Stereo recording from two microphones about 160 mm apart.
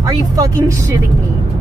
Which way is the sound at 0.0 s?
20° right (ahead or behind).